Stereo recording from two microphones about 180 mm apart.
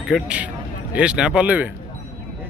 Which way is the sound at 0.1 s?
5° right (ahead or behind).